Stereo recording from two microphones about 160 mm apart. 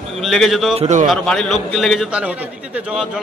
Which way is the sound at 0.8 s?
45° right (ahead or behind).